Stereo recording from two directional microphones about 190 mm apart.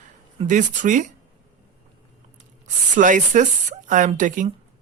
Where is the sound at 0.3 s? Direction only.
40° right (ahead or behind).